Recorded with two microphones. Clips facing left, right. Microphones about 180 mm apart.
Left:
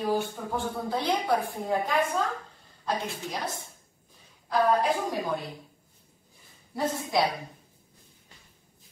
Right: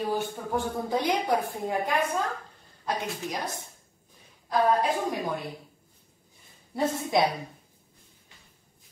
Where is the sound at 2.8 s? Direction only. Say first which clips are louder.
Even; 15° right (ahead or behind).